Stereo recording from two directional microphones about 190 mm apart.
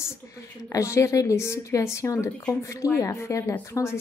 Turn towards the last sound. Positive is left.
turn(degrees=15)  # may be behind; listen again after turning